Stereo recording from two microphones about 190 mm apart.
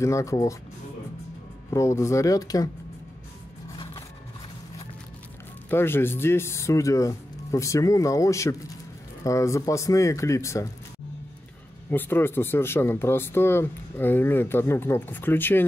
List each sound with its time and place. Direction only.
0.0 s speech: 15° left (ahead or behind)
1.7 s speech: 15° left (ahead or behind)
3.7 s a sound: 25° left (ahead or behind)
5.7 s speech: 10° left (ahead or behind)
11.9 s speech: 10° left (ahead or behind)